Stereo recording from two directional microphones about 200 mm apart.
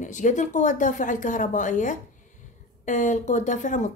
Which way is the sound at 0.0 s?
40° left (ahead or behind).